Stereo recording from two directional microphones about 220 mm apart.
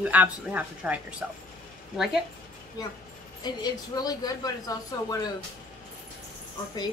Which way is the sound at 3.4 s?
20° left (ahead or behind).